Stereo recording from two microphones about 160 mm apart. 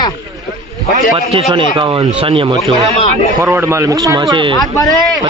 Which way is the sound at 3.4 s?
15° right (ahead or behind).